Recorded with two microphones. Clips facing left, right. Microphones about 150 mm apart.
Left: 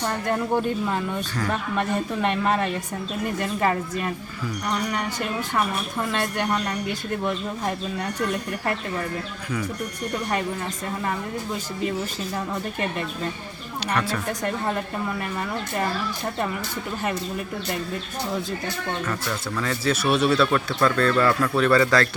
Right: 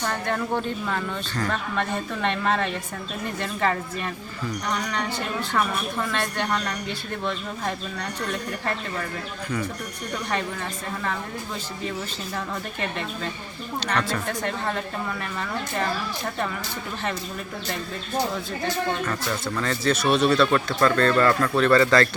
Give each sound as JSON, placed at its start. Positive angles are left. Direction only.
{"t": 0.0, "sound": "speech", "side_deg": 10}
{"t": 6.3, "sound": "speech", "side_deg": 10}
{"t": 19.5, "sound": "speech", "side_deg": 5}